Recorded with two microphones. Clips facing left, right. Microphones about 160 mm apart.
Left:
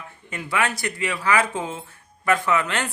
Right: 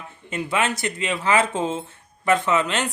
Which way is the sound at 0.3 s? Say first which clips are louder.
Right 2 dB; 25° right (ahead or behind).